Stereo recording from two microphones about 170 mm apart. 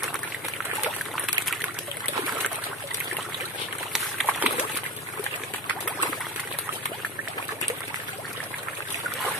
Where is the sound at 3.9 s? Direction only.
5° right (ahead or behind).